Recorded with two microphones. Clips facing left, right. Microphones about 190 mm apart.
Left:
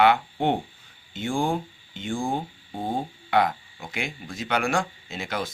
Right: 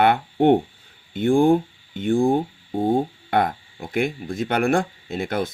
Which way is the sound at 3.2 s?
50° right (ahead or behind).